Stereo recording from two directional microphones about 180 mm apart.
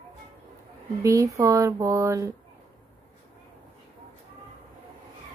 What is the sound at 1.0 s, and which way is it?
Speech, 20° right (ahead or behind).